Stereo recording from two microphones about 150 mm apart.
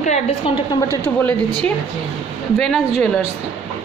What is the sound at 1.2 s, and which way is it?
Speech, 10° left (ahead or behind).